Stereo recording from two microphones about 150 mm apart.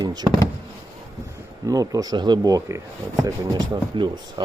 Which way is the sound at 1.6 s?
25° right (ahead or behind).